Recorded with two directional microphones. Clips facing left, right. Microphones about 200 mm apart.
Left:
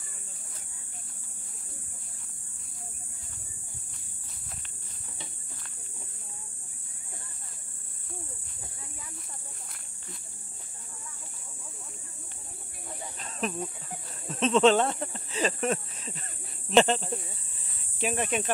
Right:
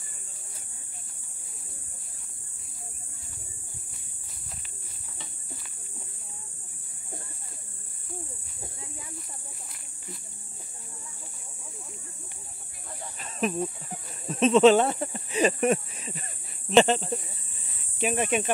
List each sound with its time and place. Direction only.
13.2 s cricket: 10° right (ahead or behind)
14.3 s speech: 10° right (ahead or behind)